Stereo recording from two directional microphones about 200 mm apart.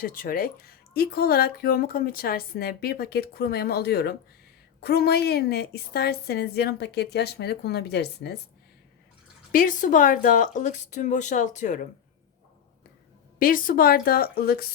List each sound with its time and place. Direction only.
0.0 s speech: 45° left (ahead or behind)
9.5 s speech: 40° left (ahead or behind)
13.4 s speech: 45° left (ahead or behind)